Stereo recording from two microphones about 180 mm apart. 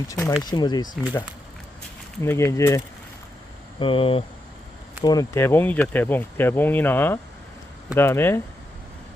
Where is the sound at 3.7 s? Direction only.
30° left (ahead or behind).